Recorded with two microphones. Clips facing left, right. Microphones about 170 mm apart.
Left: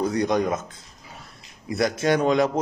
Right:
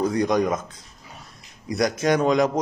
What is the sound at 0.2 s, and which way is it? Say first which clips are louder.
Speech: right 1 dB; 25° left (ahead or behind).